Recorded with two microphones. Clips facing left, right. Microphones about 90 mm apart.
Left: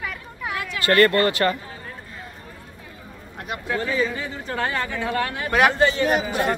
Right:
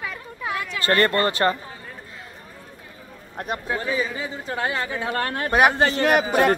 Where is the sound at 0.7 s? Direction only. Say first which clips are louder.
Left 3 dB; 30° right (ahead or behind).